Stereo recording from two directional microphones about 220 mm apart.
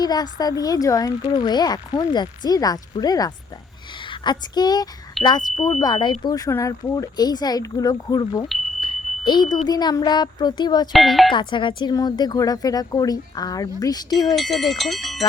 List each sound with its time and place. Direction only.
0.0 s speech: 20° left (ahead or behind)
5.2 s speech: centre (ahead or behind)
5.8 s speech: 20° left (ahead or behind)
8.8 s smoke detector: 20° left (ahead or behind)
9.6 s speech: 20° left (ahead or behind)
10.9 s speech: centre (ahead or behind)
11.3 s speech: 20° left (ahead or behind)
14.3 s speech: centre (ahead or behind)